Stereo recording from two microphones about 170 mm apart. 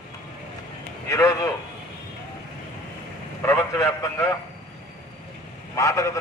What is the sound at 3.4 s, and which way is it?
Speech, 15° left (ahead or behind).